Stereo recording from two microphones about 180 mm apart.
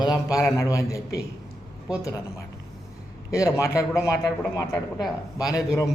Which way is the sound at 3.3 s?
15° left (ahead or behind).